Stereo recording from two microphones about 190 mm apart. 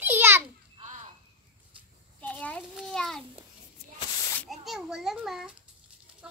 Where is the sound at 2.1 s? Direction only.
5° left (ahead or behind).